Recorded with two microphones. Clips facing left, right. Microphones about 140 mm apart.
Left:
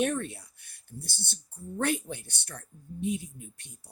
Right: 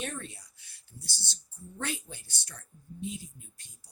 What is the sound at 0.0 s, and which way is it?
Speech, 55° left (ahead or behind).